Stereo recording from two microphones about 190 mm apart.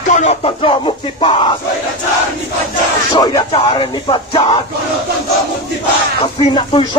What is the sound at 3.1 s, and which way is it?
Music, 20° left (ahead or behind).